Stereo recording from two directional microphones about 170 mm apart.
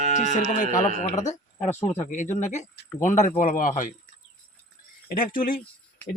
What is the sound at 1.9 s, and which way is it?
Speech, 45° left (ahead or behind).